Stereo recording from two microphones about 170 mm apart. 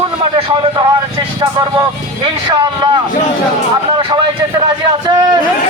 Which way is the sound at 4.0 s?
30° right (ahead or behind).